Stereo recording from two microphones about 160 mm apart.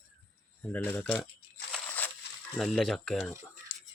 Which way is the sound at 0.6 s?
10° left (ahead or behind).